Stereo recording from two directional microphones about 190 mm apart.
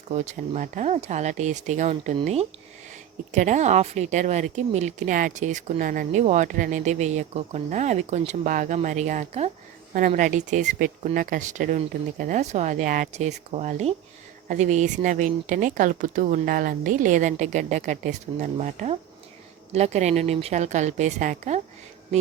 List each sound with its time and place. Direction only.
0.1 s a woman's voice: 35° right (ahead or behind)